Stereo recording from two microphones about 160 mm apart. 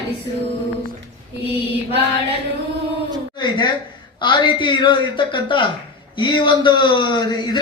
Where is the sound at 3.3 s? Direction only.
30° left (ahead or behind).